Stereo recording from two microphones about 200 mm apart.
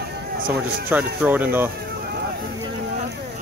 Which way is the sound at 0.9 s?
10° right (ahead or behind).